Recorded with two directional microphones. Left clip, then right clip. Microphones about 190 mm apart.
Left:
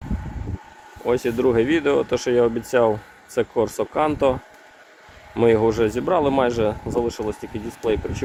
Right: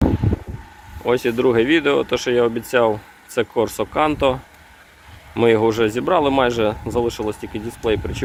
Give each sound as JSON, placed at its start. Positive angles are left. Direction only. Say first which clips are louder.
{"t": 1.0, "sound": "speech", "louder": "right 2 dB", "side_deg": 5}